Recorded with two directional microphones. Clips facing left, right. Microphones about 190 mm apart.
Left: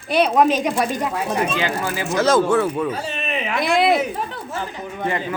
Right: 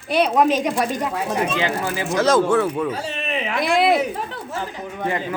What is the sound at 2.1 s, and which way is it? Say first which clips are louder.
Speech: even; 5° left (ahead or behind).